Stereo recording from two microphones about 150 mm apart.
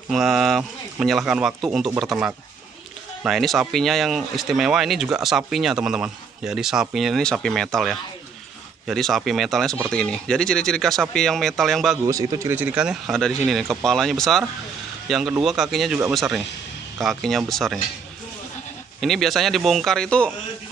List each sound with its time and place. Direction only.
0.1 s speech: centre (ahead or behind)
12.1 s speech: 25° right (ahead or behind)
12.5 s speech: 10° right (ahead or behind)
18.9 s speech: centre (ahead or behind)